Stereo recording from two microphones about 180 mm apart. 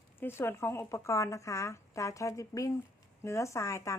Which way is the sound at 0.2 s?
10° left (ahead or behind).